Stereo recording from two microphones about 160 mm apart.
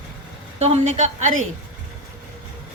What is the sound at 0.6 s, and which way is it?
Speech, 45° right (ahead or behind).